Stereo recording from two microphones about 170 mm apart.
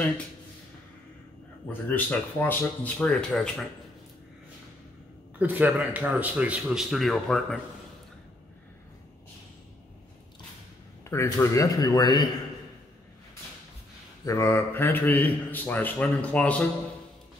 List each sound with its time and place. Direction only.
1.7 s a man's voice: 10° left (ahead or behind)
5.4 s speech: 10° right (ahead or behind)
11.1 s speech: 20° left (ahead or behind)
14.2 s a man's voice: 15° left (ahead or behind)